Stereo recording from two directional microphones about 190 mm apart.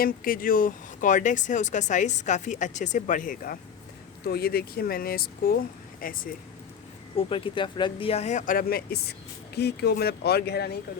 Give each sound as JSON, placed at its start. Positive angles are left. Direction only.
{"t": 0.0, "sound": "speech", "side_deg": 50}
{"t": 7.2, "sound": "speech", "side_deg": 25}